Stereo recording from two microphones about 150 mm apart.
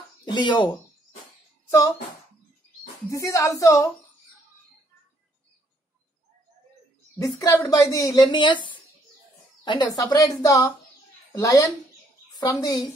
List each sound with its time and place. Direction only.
0.2 s speech: 30° left (ahead or behind)
1.7 s speech: 20° left (ahead or behind)
3.1 s speech: 20° left (ahead or behind)
7.2 s a woman's voice: 15° left (ahead or behind)